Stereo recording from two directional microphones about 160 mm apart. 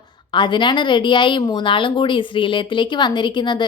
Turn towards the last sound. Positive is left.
turn(degrees=30)  # may be behind; listen again after turning